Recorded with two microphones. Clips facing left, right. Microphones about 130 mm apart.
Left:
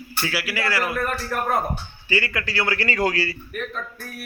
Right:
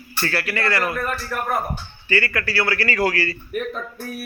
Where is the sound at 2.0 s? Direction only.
15° left (ahead or behind).